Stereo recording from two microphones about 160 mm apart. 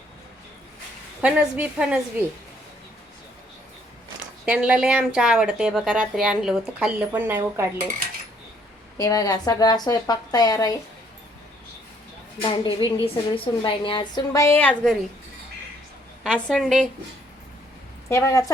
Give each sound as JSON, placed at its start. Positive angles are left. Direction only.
{"t": 1.2, "sound": "speech", "side_deg": -10}
{"t": 4.4, "sound": "speech", "side_deg": -5}
{"t": 9.0, "sound": "a woman's voice", "side_deg": 20}
{"t": 12.4, "sound": "a woman's voice", "side_deg": 30}
{"t": 16.2, "sound": "a woman's voice", "side_deg": 5}
{"t": 18.1, "sound": "a woman's voice", "side_deg": 20}